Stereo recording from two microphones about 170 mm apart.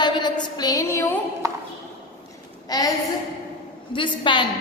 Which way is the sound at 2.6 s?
20° left (ahead or behind).